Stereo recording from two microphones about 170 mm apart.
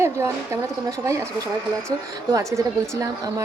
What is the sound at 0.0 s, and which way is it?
A woman's voice, 15° right (ahead or behind).